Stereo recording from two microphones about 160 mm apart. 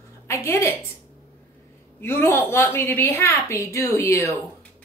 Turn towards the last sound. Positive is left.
turn(degrees=20)  # may be behind; listen again after turning